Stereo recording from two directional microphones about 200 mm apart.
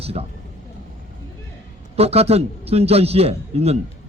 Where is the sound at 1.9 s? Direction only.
30° right (ahead or behind).